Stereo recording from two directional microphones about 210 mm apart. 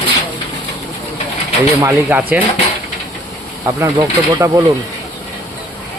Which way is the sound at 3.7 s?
15° right (ahead or behind).